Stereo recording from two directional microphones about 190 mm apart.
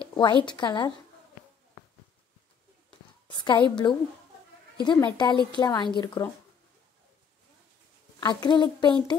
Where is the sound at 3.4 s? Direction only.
25° left (ahead or behind).